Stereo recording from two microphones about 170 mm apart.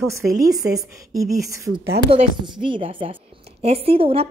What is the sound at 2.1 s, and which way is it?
A woman's voice, 30° right (ahead or behind).